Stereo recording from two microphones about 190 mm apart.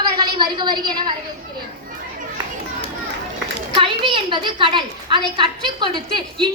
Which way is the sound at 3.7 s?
30° right (ahead or behind).